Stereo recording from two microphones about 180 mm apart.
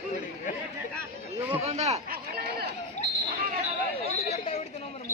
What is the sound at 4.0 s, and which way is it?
Chatter, 35° left (ahead or behind).